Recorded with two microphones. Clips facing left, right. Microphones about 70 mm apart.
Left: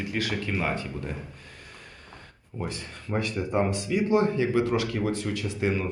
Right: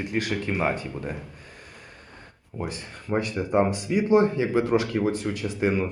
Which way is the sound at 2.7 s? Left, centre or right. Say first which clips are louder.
Right 5 dB; right.